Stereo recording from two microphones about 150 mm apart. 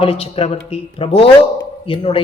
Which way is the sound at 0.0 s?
40° left (ahead or behind).